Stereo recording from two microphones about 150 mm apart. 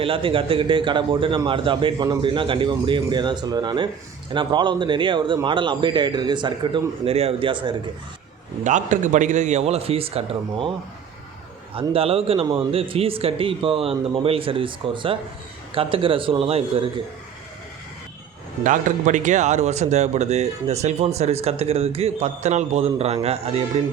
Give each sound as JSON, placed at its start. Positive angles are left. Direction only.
{"t": 0.0, "sound": "speech", "side_deg": -35}
{"t": 8.6, "sound": "speech", "side_deg": -55}
{"t": 11.7, "sound": "speech", "side_deg": -40}
{"t": 18.6, "sound": "speech", "side_deg": -60}